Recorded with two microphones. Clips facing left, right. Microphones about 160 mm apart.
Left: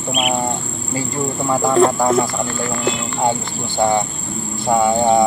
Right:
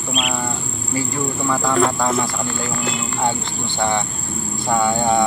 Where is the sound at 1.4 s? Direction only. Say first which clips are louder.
Left 5 dB; 25° left (ahead or behind).